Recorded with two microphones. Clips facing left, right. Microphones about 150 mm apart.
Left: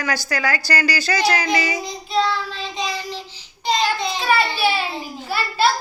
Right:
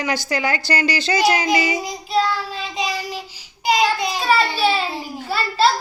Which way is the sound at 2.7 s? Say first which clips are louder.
Right 2 dB; 10° right (ahead or behind).